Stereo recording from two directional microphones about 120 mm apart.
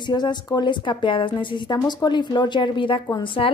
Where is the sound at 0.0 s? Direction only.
35° left (ahead or behind).